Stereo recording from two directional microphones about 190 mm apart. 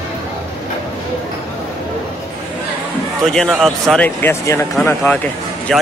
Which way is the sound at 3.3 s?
Centre (ahead or behind).